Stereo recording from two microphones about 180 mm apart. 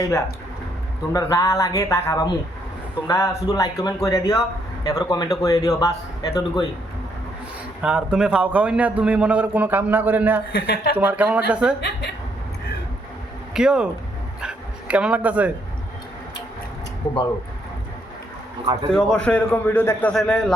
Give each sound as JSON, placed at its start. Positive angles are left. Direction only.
{"t": 1.1, "sound": "a man's voice", "side_deg": 20}
{"t": 7.8, "sound": "a man's voice", "side_deg": -5}
{"t": 10.5, "sound": "speech", "side_deg": 60}
{"t": 10.9, "sound": "a man's voice", "side_deg": -10}
{"t": 11.8, "sound": "a woman's voice", "side_deg": 65}
{"t": 13.5, "sound": "speech", "side_deg": -5}
{"t": 18.6, "sound": "a man's voice", "side_deg": -25}
{"t": 18.9, "sound": "a man's voice", "side_deg": 5}